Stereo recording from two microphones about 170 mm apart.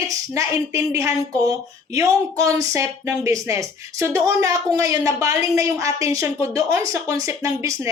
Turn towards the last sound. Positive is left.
turn(degrees=-20)  # may be behind; listen again after turning